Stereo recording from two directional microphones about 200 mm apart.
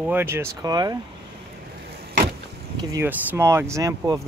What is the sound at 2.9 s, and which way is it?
Speech, 10° right (ahead or behind).